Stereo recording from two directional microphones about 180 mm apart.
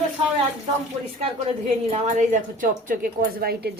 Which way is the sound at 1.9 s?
40° right (ahead or behind).